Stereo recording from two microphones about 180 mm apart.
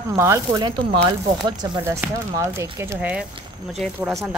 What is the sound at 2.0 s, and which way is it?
Speech, 15° right (ahead or behind).